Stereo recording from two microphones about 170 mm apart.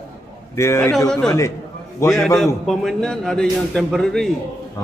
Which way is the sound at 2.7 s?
Centre (ahead or behind).